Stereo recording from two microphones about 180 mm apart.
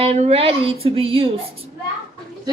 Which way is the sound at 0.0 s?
35° right (ahead or behind).